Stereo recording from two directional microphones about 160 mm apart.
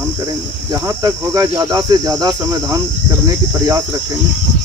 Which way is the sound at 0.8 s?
20° right (ahead or behind).